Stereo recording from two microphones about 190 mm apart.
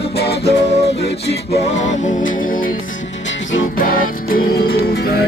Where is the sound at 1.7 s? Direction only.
45° left (ahead or behind).